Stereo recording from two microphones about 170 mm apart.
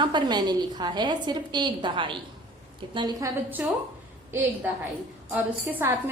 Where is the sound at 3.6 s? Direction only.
10° right (ahead or behind).